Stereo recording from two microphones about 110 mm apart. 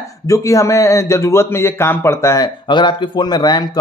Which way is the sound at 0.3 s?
30° left (ahead or behind).